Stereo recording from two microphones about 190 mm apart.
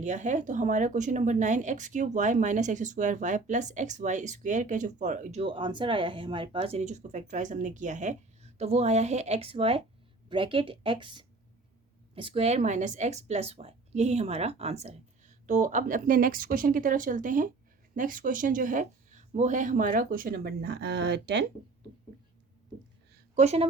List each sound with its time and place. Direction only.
0.0 s speech: 40° right (ahead or behind); by 21.4 s 65° right (ahead or behind)
23.3 s a woman's voice: 35° right (ahead or behind)